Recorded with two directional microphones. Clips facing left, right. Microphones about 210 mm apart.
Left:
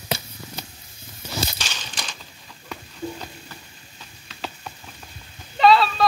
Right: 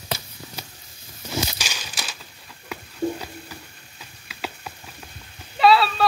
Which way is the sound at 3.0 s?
55° right (ahead or behind).